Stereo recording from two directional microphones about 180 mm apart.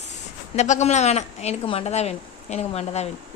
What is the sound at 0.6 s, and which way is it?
A child's voice, 40° left (ahead or behind).